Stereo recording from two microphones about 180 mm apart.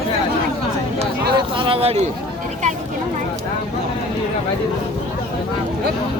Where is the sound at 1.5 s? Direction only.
30° right (ahead or behind).